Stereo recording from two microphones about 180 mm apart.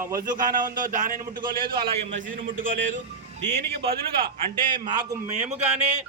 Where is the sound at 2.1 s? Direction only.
90° right.